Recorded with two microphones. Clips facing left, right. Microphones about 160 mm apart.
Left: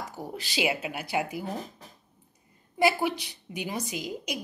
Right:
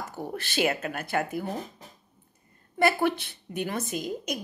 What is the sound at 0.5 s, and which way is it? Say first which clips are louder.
Speech: right 2 dB; 10° left (ahead or behind).